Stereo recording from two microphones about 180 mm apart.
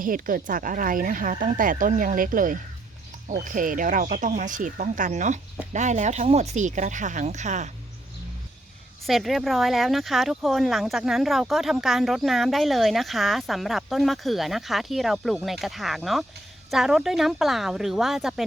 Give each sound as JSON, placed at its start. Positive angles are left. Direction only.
{"t": 0.0, "sound": "speech", "side_deg": -50}
{"t": 9.0, "sound": "speech", "side_deg": 0}